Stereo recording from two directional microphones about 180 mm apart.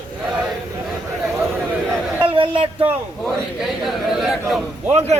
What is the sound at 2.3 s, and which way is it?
Speech, 30° right (ahead or behind).